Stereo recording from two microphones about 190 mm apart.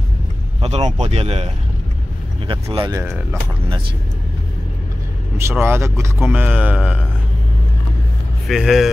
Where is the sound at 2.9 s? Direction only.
10° right (ahead or behind).